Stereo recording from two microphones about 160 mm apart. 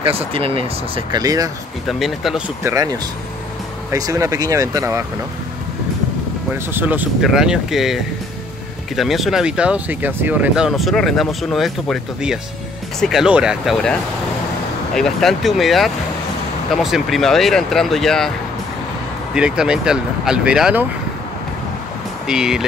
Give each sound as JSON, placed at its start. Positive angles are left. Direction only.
{"t": 0.0, "sound": "speech", "side_deg": -35}
{"t": 1.9, "sound": "speech", "side_deg": 0}
{"t": 2.6, "sound": "speech", "side_deg": -20}
{"t": 6.5, "sound": "speech", "side_deg": -10}
{"t": 15.0, "sound": "speech", "side_deg": 0}
{"t": 19.3, "sound": "speech", "side_deg": -5}
{"t": 22.2, "sound": "speech", "side_deg": -5}